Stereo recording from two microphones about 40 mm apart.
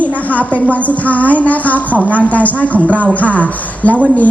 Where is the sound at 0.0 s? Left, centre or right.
Left.